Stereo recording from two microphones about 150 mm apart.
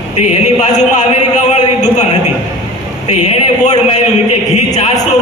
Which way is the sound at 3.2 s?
50° left (ahead or behind).